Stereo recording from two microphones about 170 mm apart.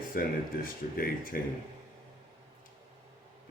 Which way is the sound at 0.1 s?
55° left (ahead or behind).